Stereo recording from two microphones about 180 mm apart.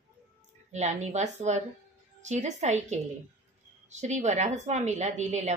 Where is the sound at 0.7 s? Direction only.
40° right (ahead or behind).